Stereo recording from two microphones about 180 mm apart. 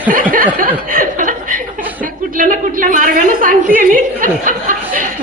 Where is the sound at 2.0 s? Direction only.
50° right (ahead or behind).